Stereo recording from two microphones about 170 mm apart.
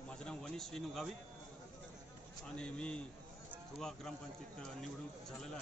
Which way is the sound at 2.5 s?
5° left (ahead or behind).